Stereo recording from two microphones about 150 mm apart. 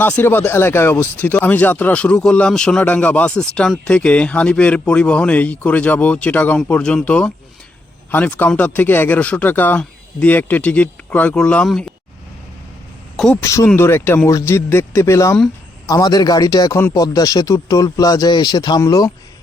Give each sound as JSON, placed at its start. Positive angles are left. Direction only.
{"t": 0.0, "sound": "speech", "side_deg": 15}
{"t": 13.1, "sound": "speech", "side_deg": 5}
{"t": 13.4, "sound": "speech", "side_deg": 20}